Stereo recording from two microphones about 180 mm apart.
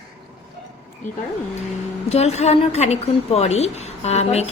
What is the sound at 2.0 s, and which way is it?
A woman's voice, 35° left (ahead or behind).